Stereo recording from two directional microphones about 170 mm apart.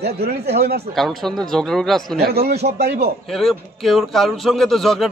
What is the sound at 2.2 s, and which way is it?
Speech, 65° right (ahead or behind).